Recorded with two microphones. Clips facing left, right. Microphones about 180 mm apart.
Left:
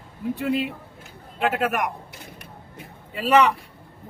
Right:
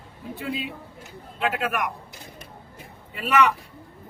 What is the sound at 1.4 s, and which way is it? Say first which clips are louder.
Speech: left 3 dB; 45° left (ahead or behind).